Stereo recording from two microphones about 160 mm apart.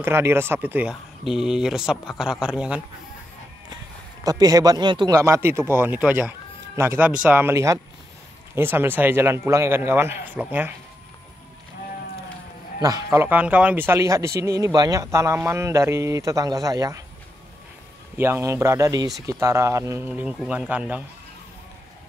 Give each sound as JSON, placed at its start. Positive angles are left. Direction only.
{"t": 0.0, "sound": "speech", "side_deg": -15}
{"t": 4.2, "sound": "speech", "side_deg": -25}
{"t": 12.8, "sound": "speech", "side_deg": -20}
{"t": 18.1, "sound": "speech", "side_deg": -15}